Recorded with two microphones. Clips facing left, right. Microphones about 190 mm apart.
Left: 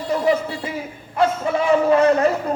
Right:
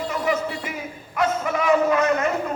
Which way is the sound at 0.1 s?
30° left (ahead or behind).